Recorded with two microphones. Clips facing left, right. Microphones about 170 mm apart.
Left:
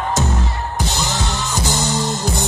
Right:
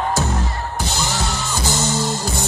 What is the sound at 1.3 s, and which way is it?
Music, 15° left (ahead or behind).